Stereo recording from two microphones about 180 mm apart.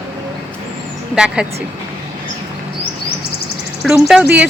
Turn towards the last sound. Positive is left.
turn(degrees=-5)  # may be behind; listen again after turning